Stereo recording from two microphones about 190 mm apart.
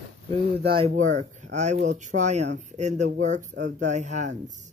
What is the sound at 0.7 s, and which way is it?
Speech, 35° right (ahead or behind).